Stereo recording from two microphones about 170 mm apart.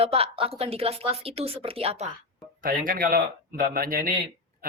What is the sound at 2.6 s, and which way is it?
Speech, 55° right (ahead or behind).